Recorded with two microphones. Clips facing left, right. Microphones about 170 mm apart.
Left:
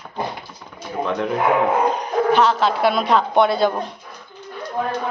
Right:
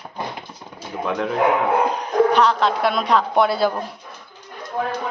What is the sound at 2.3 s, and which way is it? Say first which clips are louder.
A woman's voice: left 1 dB; centre (ahead or behind).